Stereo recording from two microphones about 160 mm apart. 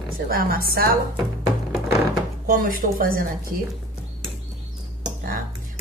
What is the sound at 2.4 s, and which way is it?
Speech, 65° right (ahead or behind).